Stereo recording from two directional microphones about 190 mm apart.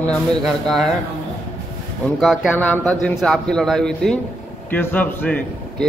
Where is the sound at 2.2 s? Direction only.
Centre (ahead or behind).